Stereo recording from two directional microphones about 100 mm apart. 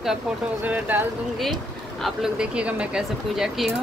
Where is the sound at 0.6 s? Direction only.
15° right (ahead or behind).